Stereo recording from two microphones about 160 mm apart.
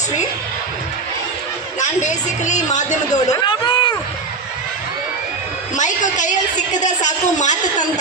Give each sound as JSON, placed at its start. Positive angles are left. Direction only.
{"t": 1.8, "sound": "a woman's voice", "side_deg": 50}
{"t": 3.1, "sound": "a sound", "side_deg": 25}
{"t": 5.7, "sound": "a woman's voice", "side_deg": 50}